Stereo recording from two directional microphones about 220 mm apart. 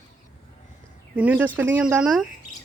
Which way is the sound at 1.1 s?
5° right (ahead or behind).